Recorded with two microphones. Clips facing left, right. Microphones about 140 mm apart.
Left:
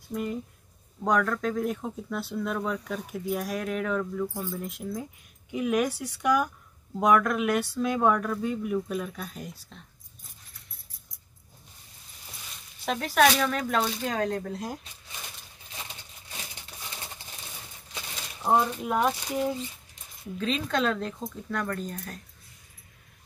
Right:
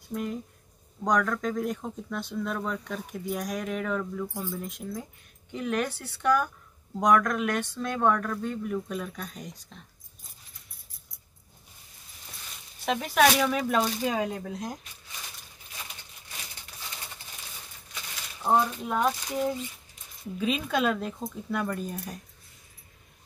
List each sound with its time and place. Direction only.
0.1 s speech: centre (ahead or behind)
12.8 s speech: centre (ahead or behind)
18.4 s speech: 5° left (ahead or behind)
20.3 s speech: 10° right (ahead or behind)